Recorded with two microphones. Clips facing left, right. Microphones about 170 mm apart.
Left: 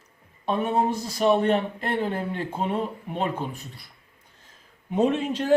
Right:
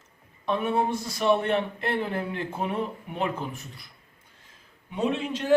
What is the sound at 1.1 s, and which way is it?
Speech, 25° left (ahead or behind).